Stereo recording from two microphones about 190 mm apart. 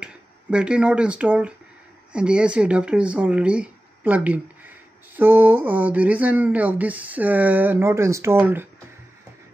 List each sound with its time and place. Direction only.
0.0 s speech: 5° right (ahead or behind)